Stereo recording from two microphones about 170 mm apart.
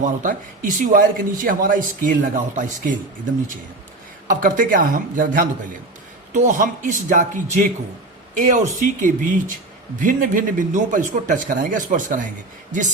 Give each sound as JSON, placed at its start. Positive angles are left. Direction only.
{"t": 0.0, "sound": "a man's voice", "side_deg": -50}
{"t": 4.3, "sound": "a man's voice", "side_deg": -55}